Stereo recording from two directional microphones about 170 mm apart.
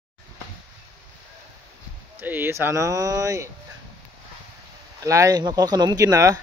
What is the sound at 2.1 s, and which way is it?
Speech, 10° right (ahead or behind).